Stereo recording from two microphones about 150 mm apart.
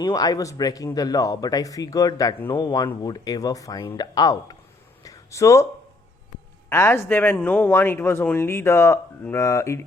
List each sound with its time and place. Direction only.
0.0 s speech: 25° left (ahead or behind)
5.0 s a sound: 20° left (ahead or behind)
6.7 s speech: 15° left (ahead or behind)